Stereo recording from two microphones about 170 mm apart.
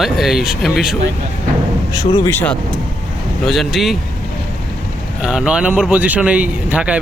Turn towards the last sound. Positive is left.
turn(degrees=-5)  # may be behind; listen again after turning